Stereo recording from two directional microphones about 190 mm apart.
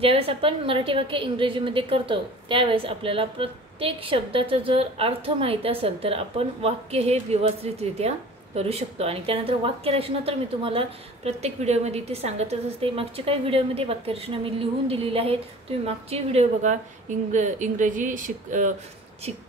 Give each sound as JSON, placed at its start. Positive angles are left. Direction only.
{"t": 0.0, "sound": "a woman's voice", "side_deg": -30}